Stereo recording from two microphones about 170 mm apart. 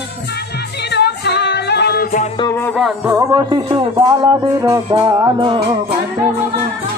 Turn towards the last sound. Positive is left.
turn(degrees=-30)  # may be behind; listen again after turning